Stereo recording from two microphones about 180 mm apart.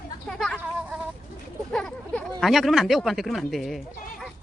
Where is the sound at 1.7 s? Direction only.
5° left (ahead or behind).